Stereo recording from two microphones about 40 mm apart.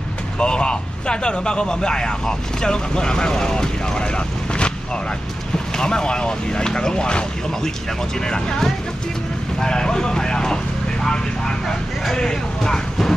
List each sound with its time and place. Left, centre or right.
0.4 s speech: left
5.8 s speech: centre
8.3 s speech: left